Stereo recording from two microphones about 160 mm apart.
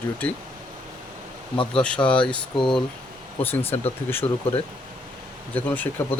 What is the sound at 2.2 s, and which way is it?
Speech, 30° left (ahead or behind).